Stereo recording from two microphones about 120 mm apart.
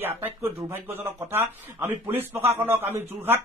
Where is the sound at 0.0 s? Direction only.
20° right (ahead or behind).